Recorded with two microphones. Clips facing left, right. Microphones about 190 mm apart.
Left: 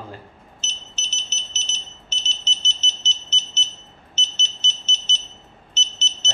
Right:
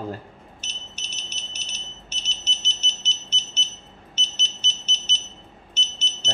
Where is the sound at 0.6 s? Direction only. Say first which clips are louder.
Left 1 dB; 10° right (ahead or behind).